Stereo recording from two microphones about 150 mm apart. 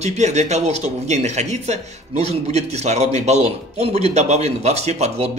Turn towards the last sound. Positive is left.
turn(degrees=-45)  # may be behind; listen again after turning